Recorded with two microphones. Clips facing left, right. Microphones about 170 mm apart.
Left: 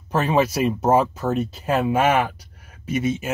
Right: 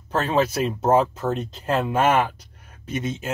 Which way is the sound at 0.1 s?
10° left (ahead or behind).